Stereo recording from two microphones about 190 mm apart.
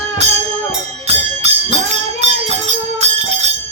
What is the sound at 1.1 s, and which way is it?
Music, 35° right (ahead or behind).